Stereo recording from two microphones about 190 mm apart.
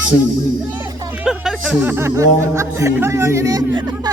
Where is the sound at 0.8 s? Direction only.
15° right (ahead or behind).